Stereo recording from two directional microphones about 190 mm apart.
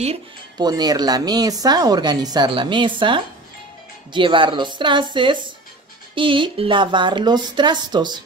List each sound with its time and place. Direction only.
0.6 s speech: 20° right (ahead or behind)